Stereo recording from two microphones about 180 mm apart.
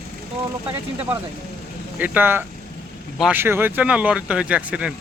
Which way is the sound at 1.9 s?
10° right (ahead or behind).